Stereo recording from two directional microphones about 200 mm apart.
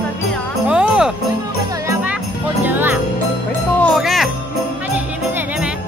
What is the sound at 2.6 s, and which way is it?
Music, 10° right (ahead or behind).